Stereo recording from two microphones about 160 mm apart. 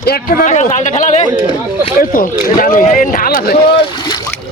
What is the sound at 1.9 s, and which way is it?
Speech, 60° left (ahead or behind).